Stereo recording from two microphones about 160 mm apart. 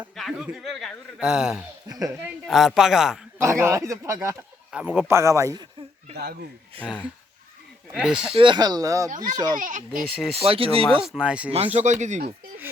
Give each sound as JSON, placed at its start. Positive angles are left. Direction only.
{"t": 0.2, "sound": "speech", "side_deg": 0}
{"t": 1.9, "sound": "speech", "side_deg": -20}
{"t": 2.5, "sound": "speech", "side_deg": 0}
{"t": 3.3, "sound": "speech", "side_deg": -15}
{"t": 4.7, "sound": "speech", "side_deg": -5}
{"t": 6.7, "sound": "speech", "side_deg": -35}
{"t": 7.9, "sound": "speech", "side_deg": -5}
{"t": 8.4, "sound": "speech", "side_deg": -30}
{"t": 9.0, "sound": "a child's voice", "side_deg": -50}
{"t": 10.0, "sound": "speech", "side_deg": 0}
{"t": 10.3, "sound": "speech", "side_deg": -35}
{"t": 11.0, "sound": "speech", "side_deg": -5}
{"t": 11.5, "sound": "speech", "side_deg": -40}